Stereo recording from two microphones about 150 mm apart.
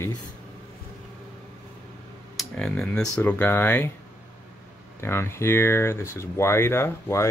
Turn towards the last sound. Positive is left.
turn(degrees=15)  # may be behind; listen again after turning